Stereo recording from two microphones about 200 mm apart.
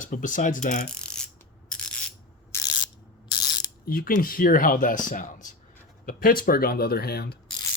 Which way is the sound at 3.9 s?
45° left (ahead or behind).